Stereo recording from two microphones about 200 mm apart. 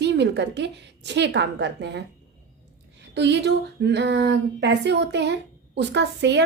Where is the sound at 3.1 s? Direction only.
60° right (ahead or behind).